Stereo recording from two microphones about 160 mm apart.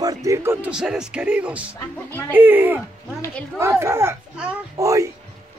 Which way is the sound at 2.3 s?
10° right (ahead or behind).